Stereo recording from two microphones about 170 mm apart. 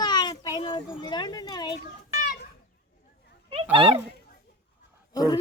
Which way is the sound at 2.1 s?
50° left (ahead or behind).